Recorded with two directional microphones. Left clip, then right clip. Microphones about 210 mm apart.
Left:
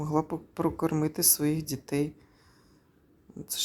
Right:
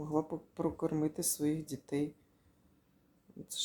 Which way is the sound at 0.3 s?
10° left (ahead or behind).